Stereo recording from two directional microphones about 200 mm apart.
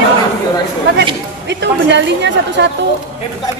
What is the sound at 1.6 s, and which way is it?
A woman's voice, 60° right (ahead or behind).